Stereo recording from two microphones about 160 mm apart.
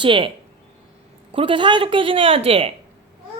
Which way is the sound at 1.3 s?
35° right (ahead or behind).